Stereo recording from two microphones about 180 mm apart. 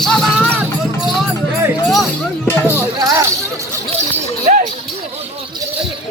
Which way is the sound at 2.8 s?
15° right (ahead or behind).